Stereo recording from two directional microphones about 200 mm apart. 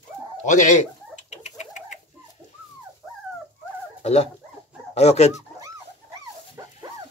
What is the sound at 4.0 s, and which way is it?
Speech, 30° left (ahead or behind).